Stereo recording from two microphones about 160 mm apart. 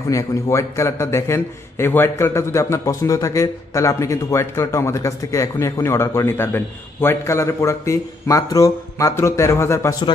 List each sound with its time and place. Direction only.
0.1 s a man's voice: 20° left (ahead or behind)